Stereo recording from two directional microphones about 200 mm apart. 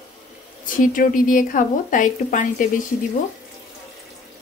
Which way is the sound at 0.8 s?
40° left (ahead or behind).